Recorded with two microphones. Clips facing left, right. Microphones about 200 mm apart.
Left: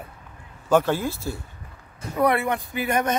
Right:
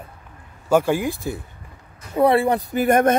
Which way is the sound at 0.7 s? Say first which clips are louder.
Right 2 dB; 10° right (ahead or behind).